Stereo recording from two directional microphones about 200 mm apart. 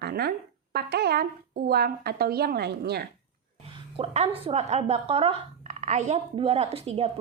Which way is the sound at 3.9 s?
35° right (ahead or behind).